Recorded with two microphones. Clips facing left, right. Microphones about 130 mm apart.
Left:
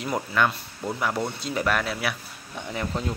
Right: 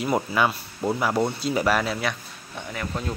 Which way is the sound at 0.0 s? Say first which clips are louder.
Right 2 dB; 10° right (ahead or behind).